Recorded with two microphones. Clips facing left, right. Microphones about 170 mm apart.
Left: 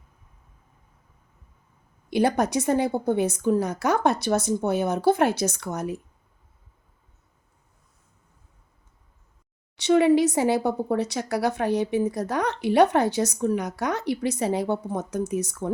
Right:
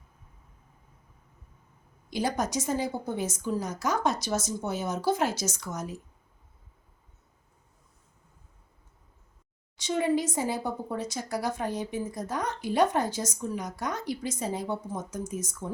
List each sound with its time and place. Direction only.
2.0 s a woman's voice: 65° left (ahead or behind)
9.7 s speech: 70° left (ahead or behind)